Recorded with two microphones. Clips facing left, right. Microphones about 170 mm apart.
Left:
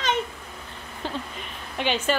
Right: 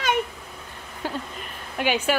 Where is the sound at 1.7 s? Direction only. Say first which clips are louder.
Right 2 dB; 10° right (ahead or behind).